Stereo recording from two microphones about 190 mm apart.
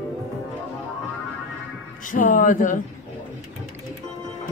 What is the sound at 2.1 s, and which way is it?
Speech, 45° left (ahead or behind).